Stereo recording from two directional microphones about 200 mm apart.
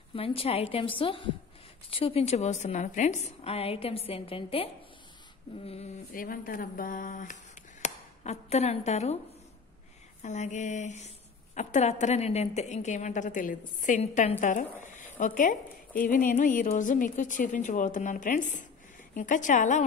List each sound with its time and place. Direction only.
0.1 s a woman's voice: 30° left (ahead or behind)
5.7 s speech: 35° left (ahead or behind)
10.2 s speech: 35° left (ahead or behind)